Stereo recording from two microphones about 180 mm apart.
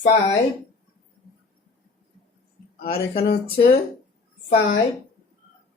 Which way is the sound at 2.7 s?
55° left (ahead or behind).